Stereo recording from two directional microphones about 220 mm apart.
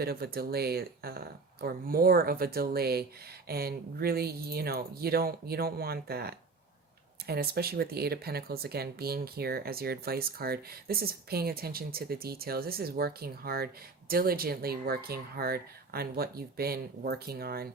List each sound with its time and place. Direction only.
0.0 s speech: 45° right (ahead or behind)